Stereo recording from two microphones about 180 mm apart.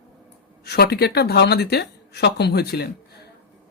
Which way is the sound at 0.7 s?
60° left (ahead or behind).